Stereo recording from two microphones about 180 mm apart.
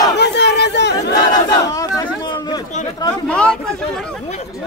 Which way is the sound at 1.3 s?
20° left (ahead or behind).